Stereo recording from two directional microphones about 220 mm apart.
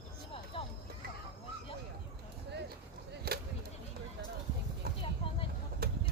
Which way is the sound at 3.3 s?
45° right (ahead or behind).